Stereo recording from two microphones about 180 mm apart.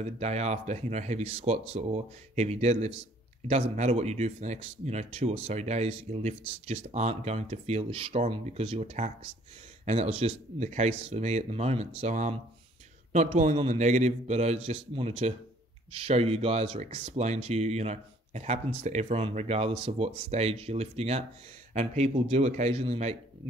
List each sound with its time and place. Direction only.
0.0 s speech: 35° right (ahead or behind)